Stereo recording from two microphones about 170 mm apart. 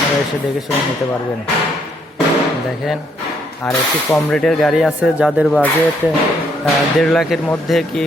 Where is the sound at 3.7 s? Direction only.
5° left (ahead or behind).